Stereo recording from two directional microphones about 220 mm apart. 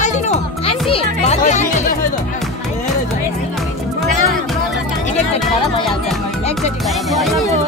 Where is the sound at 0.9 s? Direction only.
30° left (ahead or behind).